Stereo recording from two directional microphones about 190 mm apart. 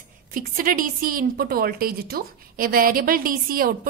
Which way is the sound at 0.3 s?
50° right (ahead or behind).